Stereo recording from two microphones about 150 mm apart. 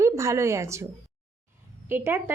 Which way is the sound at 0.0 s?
20° right (ahead or behind).